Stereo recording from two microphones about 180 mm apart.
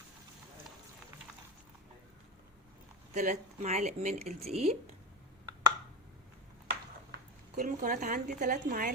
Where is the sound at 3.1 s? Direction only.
40° right (ahead or behind).